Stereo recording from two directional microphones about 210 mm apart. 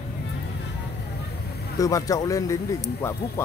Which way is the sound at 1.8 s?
15° left (ahead or behind).